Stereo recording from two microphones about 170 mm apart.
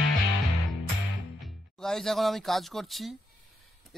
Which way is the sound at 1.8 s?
Centre (ahead or behind).